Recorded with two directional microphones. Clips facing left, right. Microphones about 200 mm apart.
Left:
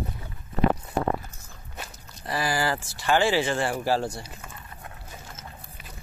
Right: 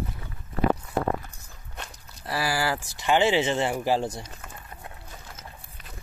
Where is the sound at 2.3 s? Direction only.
5° right (ahead or behind).